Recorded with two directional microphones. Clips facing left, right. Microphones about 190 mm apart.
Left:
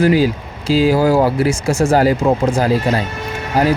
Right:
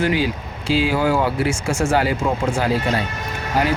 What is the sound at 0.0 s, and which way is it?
Speech, 40° left (ahead or behind).